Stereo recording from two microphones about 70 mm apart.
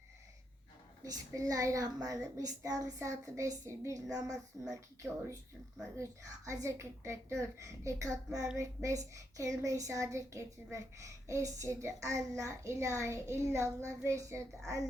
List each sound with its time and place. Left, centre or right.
1.0 s a woman's voice: right
3.0 s child singing: right
4.7 s speech: right
5.8 s child singing: right